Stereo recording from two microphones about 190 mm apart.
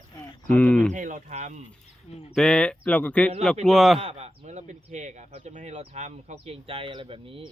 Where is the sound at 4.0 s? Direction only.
30° right (ahead or behind).